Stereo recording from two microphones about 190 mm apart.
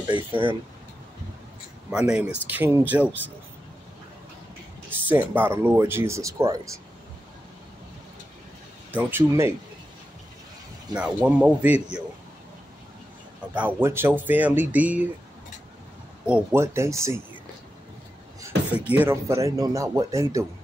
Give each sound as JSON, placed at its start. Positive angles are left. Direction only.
{"t": 0.0, "sound": "speech", "side_deg": -25}
{"t": 1.9, "sound": "speech", "side_deg": -5}
{"t": 4.8, "sound": "speech", "side_deg": -10}
{"t": 8.9, "sound": "speech", "side_deg": -15}
{"t": 11.0, "sound": "speech", "side_deg": -5}
{"t": 13.6, "sound": "speech", "side_deg": -10}
{"t": 16.3, "sound": "speech", "side_deg": -10}
{"t": 18.4, "sound": "speech", "side_deg": -10}